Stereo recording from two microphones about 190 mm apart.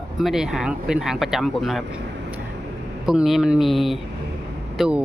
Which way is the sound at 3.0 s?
Centre (ahead or behind).